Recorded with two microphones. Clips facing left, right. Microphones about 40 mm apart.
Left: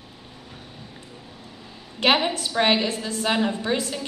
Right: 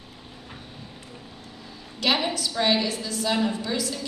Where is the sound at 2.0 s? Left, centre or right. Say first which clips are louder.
Left 4 dB; left.